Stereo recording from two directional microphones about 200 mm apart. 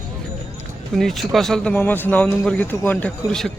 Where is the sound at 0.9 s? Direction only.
Centre (ahead or behind).